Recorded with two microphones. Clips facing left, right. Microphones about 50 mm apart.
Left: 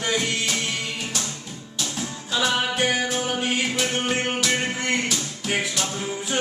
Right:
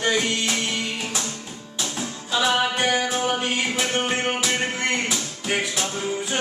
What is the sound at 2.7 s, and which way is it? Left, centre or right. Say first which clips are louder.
Music: right 1 dB; centre.